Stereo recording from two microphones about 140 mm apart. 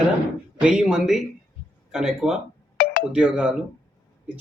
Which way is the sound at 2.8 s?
90° left.